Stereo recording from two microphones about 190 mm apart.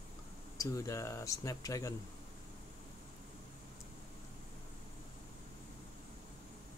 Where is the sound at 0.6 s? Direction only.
15° left (ahead or behind).